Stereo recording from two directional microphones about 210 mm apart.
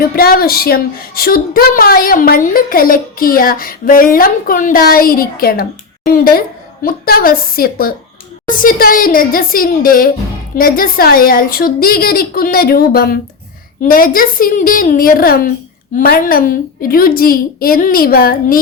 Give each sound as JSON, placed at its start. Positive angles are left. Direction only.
{"t": 0.0, "sound": "a woman's voice", "side_deg": 45}